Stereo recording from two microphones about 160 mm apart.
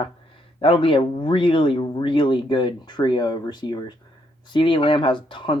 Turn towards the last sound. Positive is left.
turn(degrees=30)  # may be behind; listen again after turning